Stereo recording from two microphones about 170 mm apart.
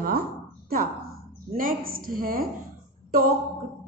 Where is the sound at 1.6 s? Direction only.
55° right (ahead or behind).